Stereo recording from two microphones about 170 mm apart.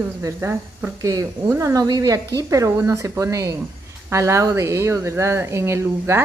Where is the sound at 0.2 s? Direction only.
15° right (ahead or behind).